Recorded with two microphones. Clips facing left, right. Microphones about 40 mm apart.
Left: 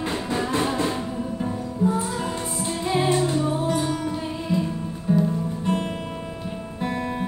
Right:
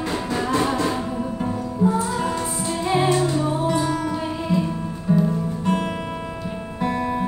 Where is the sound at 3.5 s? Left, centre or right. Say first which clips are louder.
Right 2 dB; right.